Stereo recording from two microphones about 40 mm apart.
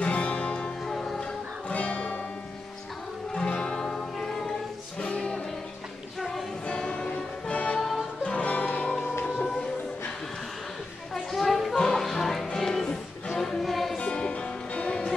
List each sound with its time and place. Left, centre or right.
0.0 s music: left
0.6 s music: centre
1.7 s music: left
3.3 s music: left
6.7 s music: left
11.3 s a sound: centre
11.7 s music: centre
12.0 s music: centre
13.4 s choir: centre
13.9 s music: left